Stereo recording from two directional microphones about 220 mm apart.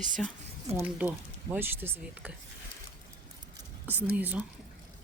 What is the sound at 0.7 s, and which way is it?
Speech, 10° right (ahead or behind).